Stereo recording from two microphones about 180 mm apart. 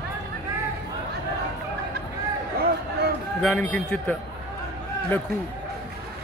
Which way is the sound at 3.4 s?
5° left (ahead or behind).